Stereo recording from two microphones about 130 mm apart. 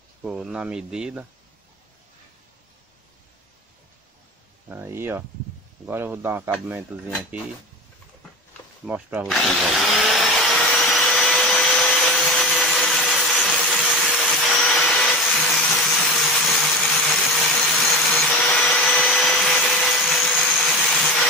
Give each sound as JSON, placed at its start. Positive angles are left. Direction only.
{"t": 0.2, "sound": "speech", "side_deg": -5}
{"t": 4.6, "sound": "speech", "side_deg": -15}
{"t": 8.8, "sound": "speech", "side_deg": -10}
{"t": 9.3, "sound": "vacuum cleaner", "side_deg": 0}